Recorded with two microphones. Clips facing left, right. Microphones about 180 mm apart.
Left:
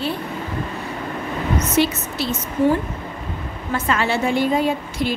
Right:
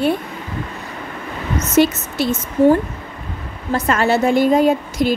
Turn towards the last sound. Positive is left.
turn(degrees=-45)  # may be behind; listen again after turning